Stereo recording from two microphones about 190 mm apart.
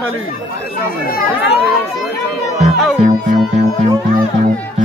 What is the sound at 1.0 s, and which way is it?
Speech, 50° left (ahead or behind).